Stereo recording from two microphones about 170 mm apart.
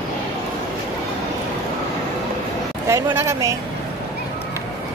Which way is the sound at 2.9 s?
15° right (ahead or behind).